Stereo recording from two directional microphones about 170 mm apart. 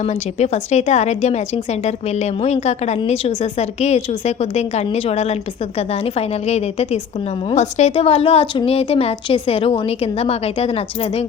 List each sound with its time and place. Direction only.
0.0 s a woman's voice: 40° left (ahead or behind)